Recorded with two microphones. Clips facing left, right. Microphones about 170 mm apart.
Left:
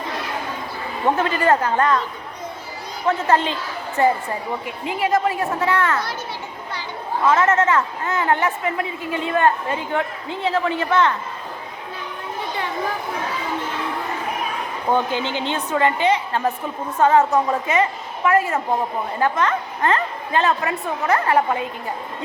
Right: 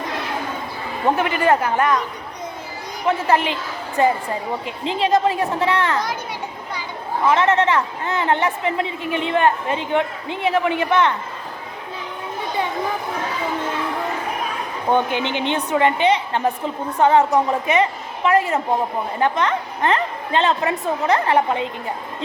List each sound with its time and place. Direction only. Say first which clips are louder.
1.1 s speech: right 1 dB; 15° right (ahead or behind)
3.1 s a woman's voice: even; 10° right (ahead or behind)
7.3 s a woman's voice: even; 15° right (ahead or behind)
14.9 s a woman's voice: right 2 dB; 20° right (ahead or behind)